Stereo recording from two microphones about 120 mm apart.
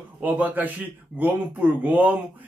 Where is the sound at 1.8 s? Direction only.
15° right (ahead or behind).